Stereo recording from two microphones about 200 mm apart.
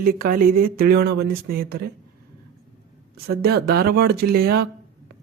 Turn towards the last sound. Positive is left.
turn(degrees=-50)  # may be behind; listen again after turning